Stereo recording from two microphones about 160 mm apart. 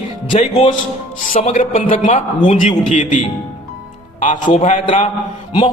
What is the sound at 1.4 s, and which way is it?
A man's voice, 45° left (ahead or behind).